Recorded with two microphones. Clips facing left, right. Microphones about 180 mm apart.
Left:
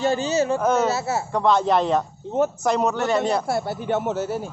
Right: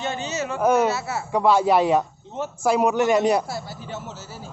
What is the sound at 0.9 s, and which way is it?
Speech, 25° left (ahead or behind).